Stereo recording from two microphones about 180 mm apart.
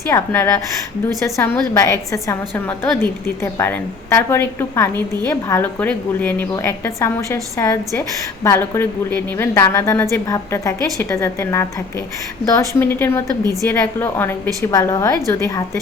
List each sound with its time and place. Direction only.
0.1 s a woman's voice: 15° left (ahead or behind)
3.4 s a woman's voice: 10° left (ahead or behind)
13.2 s a woman's voice: 20° right (ahead or behind)
13.7 s a woman's voice: 10° left (ahead or behind)